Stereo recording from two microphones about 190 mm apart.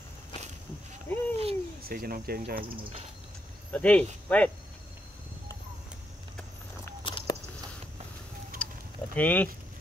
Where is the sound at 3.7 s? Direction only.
5° left (ahead or behind).